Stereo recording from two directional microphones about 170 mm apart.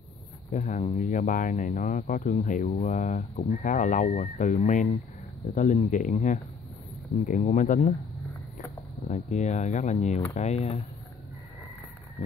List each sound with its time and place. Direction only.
0.5 s speech: 45° left (ahead or behind)
9.0 s speech: 45° left (ahead or behind)